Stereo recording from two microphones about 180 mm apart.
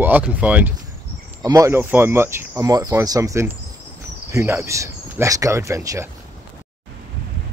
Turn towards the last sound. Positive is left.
turn(degrees=-15)  # may be behind; listen again after turning